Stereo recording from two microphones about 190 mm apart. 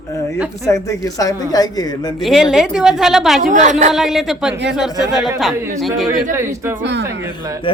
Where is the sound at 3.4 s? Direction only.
40° right (ahead or behind).